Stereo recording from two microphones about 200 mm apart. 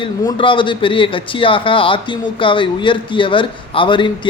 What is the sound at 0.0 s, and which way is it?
A man's voice, 25° left (ahead or behind).